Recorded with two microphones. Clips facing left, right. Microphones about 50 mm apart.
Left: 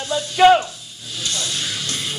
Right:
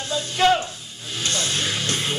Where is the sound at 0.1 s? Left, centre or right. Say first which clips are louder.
Left 6 dB; left.